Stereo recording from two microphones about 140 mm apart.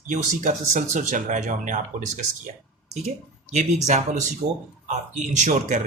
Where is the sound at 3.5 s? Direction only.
55° right (ahead or behind).